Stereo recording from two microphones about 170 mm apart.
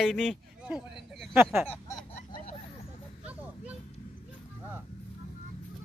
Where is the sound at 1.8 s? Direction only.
20° left (ahead or behind).